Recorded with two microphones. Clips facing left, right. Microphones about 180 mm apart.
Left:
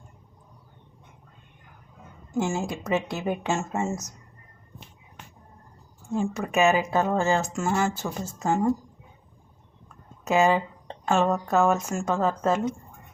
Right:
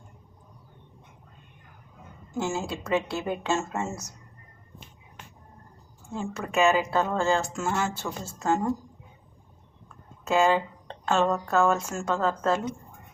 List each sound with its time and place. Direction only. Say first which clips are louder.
2.3 s speech: left 3 dB; 15° left (ahead or behind)
6.1 s speech: left 5 dB; 15° left (ahead or behind)
10.2 s speech: left 1 dB; 15° left (ahead or behind)